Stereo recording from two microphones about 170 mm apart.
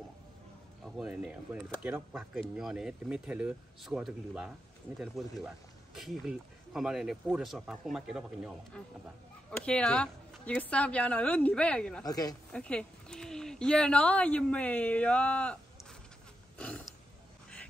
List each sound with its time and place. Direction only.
0.8 s speech: 5° right (ahead or behind)
8.8 s speech: 5° left (ahead or behind)
12.0 s speech: 20° left (ahead or behind)
12.5 s speech: 5° left (ahead or behind)
16.5 s a sound: 5° left (ahead or behind)